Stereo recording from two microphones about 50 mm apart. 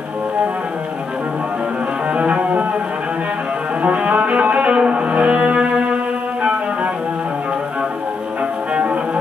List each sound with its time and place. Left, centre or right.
2.1 s music: right
3.8 s cello: right
8.7 s music: right